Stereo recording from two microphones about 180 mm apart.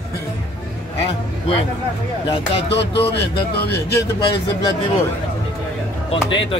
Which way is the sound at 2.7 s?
70° left (ahead or behind).